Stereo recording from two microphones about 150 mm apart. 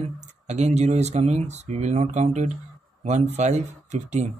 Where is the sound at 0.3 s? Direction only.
50° right (ahead or behind).